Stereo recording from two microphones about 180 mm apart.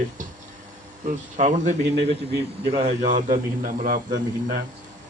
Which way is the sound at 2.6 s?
35° right (ahead or behind).